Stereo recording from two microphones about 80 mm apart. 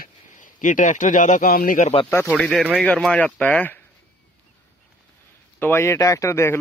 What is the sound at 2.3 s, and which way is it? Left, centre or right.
Speech, centre.